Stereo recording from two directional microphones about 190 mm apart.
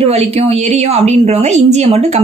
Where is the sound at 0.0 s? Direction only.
35° right (ahead or behind).